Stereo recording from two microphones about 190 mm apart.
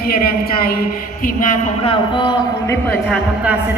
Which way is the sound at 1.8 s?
25° left (ahead or behind).